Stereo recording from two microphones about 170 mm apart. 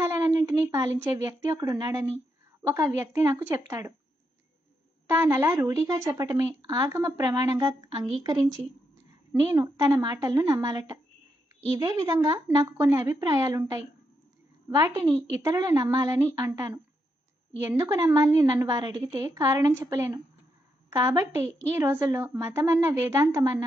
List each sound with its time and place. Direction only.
0.0 s a sound: 15° right (ahead or behind)
0.5 s a woman's voice: 15° right (ahead or behind)
5.1 s a woman's voice: 15° right (ahead or behind)